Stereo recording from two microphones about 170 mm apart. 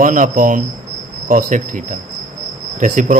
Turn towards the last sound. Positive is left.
turn(degrees=-50)  # may be behind; listen again after turning